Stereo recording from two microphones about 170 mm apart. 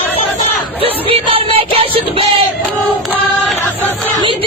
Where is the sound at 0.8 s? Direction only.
35° right (ahead or behind).